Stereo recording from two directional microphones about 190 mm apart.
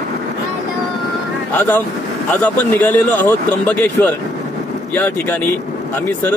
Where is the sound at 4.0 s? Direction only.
15° left (ahead or behind).